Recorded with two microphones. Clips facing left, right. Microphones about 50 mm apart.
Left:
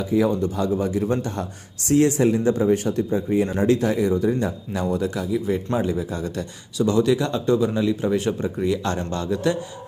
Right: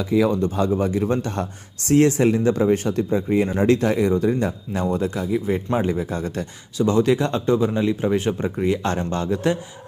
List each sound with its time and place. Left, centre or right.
0.0 s speech: right
0.4 s a man's voice: right
4.7 s speech: right
5.7 s speech: right